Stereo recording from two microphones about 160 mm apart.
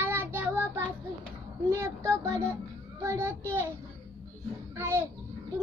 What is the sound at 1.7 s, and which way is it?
A child's voice, 20° right (ahead or behind).